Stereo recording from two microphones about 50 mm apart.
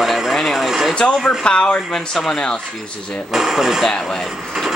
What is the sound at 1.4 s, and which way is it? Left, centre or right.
Speech, centre.